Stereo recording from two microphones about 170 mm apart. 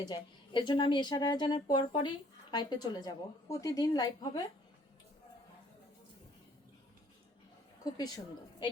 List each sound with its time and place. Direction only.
0.1 s a woman's voice: 25° left (ahead or behind)
7.9 s a woman's voice: 25° left (ahead or behind)